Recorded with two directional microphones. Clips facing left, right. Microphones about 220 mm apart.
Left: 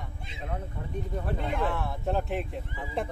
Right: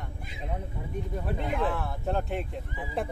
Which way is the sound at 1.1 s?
5° right (ahead or behind).